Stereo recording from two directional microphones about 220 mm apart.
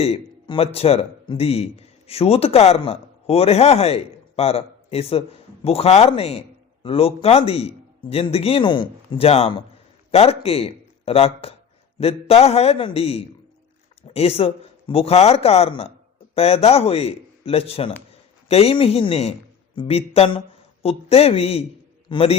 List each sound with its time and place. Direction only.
0.0 s speech: 25° left (ahead or behind)